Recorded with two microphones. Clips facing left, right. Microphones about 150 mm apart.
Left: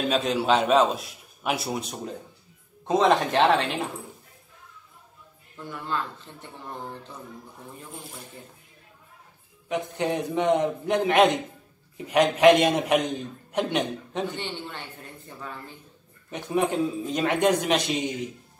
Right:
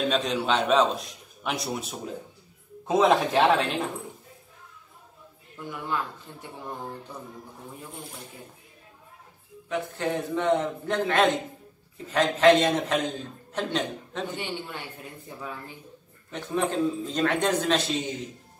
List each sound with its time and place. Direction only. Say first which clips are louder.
0.0 s a man's voice: left 1 dB; centre (ahead or behind)
5.7 s a man's voice: even; 10° right (ahead or behind)
9.7 s a man's voice: left 2 dB; 15° left (ahead or behind)
14.3 s speech: right 1 dB; 10° right (ahead or behind)
16.3 s a man's voice: left 2 dB; 15° left (ahead or behind)